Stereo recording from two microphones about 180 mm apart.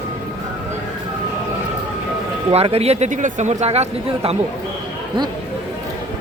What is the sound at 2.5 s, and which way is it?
Speech, 35° right (ahead or behind).